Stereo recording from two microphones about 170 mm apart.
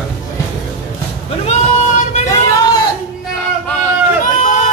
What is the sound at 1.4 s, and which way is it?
Vehicle, 40° left (ahead or behind).